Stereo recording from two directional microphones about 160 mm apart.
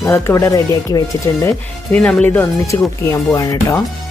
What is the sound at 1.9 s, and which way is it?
Speech, 10° left (ahead or behind).